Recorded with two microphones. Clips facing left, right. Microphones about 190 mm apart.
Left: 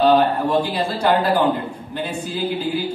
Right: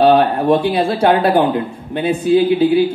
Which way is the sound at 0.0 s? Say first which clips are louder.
Right 4 dB; 65° right (ahead or behind).